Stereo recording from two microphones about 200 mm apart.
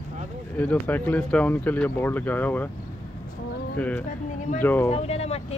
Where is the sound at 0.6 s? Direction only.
10° left (ahead or behind).